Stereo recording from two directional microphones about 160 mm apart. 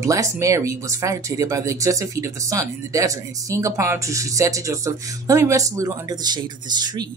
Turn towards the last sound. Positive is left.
turn(degrees=-25)  # may be behind; listen again after turning